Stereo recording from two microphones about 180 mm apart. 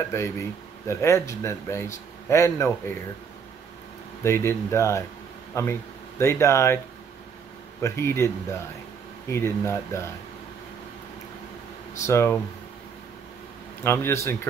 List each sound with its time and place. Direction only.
0.1 s speech: 15° left (ahead or behind)
4.2 s speech: 15° left (ahead or behind)
7.8 s speech: 15° left (ahead or behind)
12.1 s speech: 15° left (ahead or behind)
13.8 s speech: 15° left (ahead or behind)